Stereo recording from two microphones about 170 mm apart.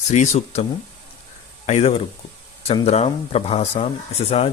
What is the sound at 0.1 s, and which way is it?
Speech, 45° left (ahead or behind).